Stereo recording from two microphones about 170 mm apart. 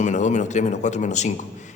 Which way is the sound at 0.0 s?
45° left (ahead or behind).